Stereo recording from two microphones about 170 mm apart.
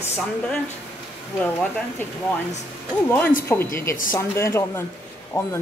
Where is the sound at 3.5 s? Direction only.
15° left (ahead or behind).